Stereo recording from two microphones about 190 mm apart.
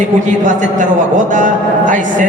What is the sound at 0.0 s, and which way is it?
A man's voice, 40° right (ahead or behind).